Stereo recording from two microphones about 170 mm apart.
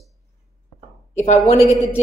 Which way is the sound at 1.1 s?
45° left (ahead or behind).